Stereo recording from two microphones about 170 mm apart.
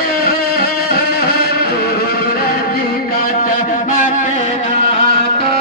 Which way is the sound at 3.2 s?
55° left (ahead or behind).